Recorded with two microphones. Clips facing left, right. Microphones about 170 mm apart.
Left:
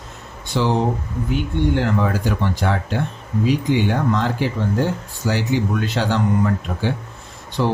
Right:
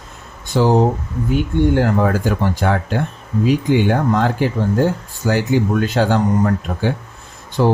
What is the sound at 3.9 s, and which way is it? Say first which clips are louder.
Speech: right 3 dB; 50° right (ahead or behind).